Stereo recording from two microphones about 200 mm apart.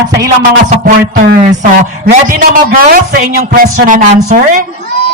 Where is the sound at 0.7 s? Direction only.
45° right (ahead or behind).